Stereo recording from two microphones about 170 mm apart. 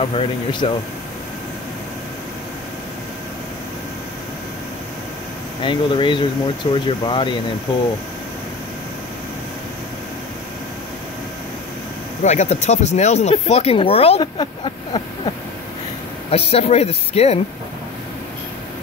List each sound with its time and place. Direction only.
0.0 s speech: 35° left (ahead or behind)
5.6 s speech: 30° left (ahead or behind)
12.2 s speech: 40° left (ahead or behind)